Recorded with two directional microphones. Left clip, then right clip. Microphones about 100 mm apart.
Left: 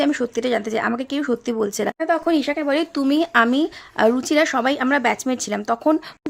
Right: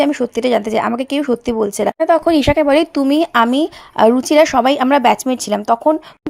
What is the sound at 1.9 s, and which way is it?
Speech, 50° right (ahead or behind).